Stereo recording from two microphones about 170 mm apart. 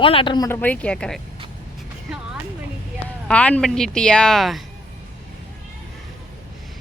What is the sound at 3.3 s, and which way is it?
Speech, 5° left (ahead or behind).